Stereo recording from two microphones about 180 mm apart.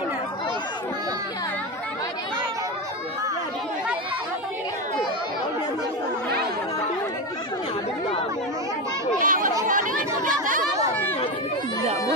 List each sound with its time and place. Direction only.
9.2 s chatter: 50° right (ahead or behind)